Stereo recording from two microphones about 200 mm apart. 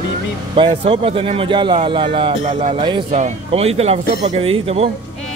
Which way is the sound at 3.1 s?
35° right (ahead or behind).